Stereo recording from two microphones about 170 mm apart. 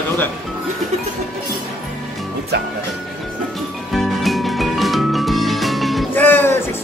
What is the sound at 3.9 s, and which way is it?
Music, centre (ahead or behind).